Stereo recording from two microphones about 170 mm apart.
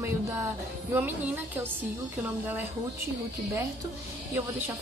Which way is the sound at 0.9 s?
10° right (ahead or behind).